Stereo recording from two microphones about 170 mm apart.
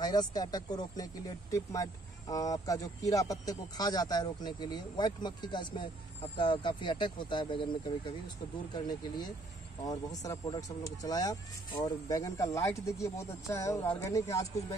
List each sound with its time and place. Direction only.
0.0 s speech: 25° left (ahead or behind)
9.8 s speech: 20° left (ahead or behind)